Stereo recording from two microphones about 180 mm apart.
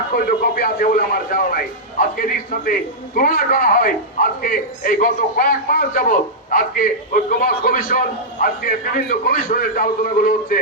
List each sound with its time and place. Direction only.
0.1 s a man's voice: 55° left (ahead or behind)